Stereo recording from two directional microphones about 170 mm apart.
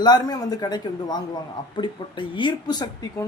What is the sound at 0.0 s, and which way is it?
Speech, 25° left (ahead or behind).